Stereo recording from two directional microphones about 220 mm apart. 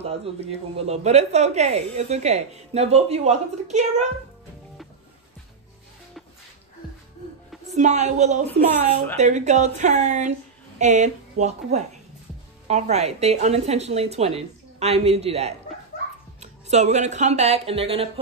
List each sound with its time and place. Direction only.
0.0 s a woman's voice: 30° right (ahead or behind)
7.6 s a woman's voice: 30° right (ahead or behind)